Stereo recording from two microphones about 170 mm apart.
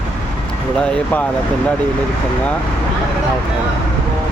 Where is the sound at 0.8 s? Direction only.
5° left (ahead or behind).